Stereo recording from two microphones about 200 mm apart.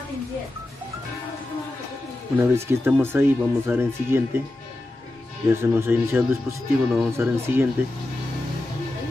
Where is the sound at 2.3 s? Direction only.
10° right (ahead or behind).